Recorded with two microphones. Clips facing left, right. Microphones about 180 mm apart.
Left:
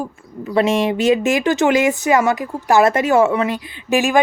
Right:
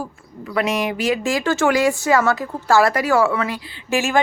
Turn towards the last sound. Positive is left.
turn(degrees=15)  # may be behind; listen again after turning